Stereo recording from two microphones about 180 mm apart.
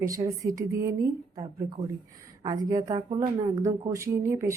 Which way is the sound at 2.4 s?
20° right (ahead or behind).